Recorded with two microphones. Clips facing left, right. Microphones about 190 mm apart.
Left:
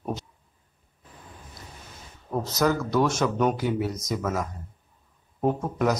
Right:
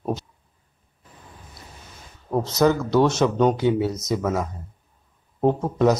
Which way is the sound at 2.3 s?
25° right (ahead or behind).